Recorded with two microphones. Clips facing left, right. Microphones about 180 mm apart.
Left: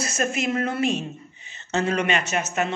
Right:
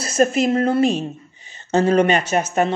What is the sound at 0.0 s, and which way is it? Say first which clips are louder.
A woman's voice: right 8 dB; 35° right (ahead or behind).